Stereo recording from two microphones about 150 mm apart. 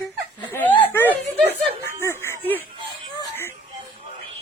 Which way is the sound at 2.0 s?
15° left (ahead or behind).